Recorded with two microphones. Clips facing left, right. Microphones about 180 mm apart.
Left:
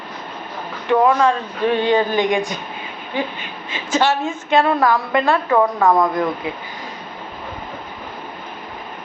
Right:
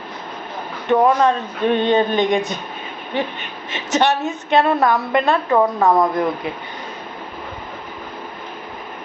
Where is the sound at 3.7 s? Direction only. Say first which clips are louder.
Even; 20° right (ahead or behind).